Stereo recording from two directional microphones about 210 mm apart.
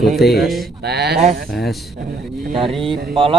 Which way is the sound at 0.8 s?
50° right (ahead or behind).